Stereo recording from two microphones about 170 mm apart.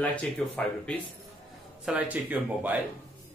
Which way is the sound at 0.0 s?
10° left (ahead or behind).